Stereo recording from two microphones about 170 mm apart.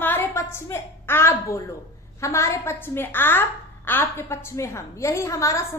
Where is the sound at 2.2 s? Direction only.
15° left (ahead or behind).